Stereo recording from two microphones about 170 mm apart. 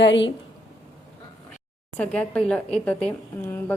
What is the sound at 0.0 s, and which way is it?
Speech, 90° left.